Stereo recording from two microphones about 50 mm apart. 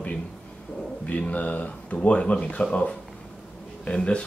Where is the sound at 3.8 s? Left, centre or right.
Left.